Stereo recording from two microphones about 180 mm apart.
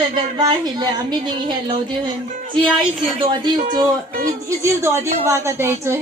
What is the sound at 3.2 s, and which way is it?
Speech, 25° right (ahead or behind).